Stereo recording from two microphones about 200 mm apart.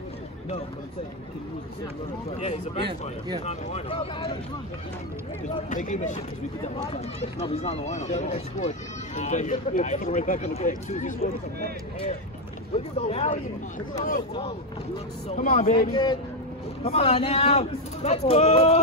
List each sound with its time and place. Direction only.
2.3 s speech: 35° left (ahead or behind)
5.4 s speech: 40° left (ahead or behind)
12.7 s speech: 35° left (ahead or behind)
15.2 s speech: 40° left (ahead or behind)
15.7 s speech: 25° left (ahead or behind)